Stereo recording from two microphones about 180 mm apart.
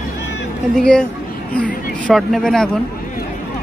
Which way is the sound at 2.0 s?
Centre (ahead or behind).